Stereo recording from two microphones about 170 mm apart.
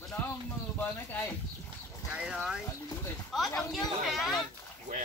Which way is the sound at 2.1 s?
5° right (ahead or behind).